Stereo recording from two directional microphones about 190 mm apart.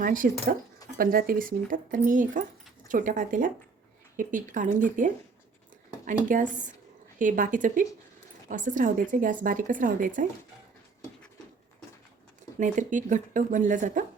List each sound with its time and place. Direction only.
0.0 s speech: 45° right (ahead or behind)
12.5 s speech: 40° right (ahead or behind)